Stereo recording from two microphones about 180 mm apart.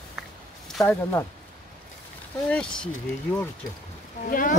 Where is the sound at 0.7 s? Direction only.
10° left (ahead or behind).